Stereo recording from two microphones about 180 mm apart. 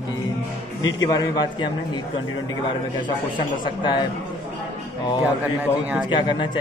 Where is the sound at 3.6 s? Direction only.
25° left (ahead or behind).